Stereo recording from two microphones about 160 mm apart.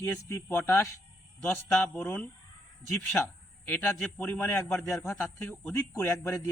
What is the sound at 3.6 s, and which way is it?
Speech, 10° left (ahead or behind).